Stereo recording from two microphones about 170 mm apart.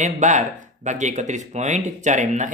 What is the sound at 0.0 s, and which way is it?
Speech, 45° right (ahead or behind).